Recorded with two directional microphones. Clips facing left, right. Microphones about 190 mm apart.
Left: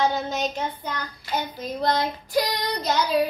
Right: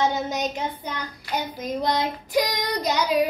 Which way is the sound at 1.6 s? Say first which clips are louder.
Even; 15° right (ahead or behind).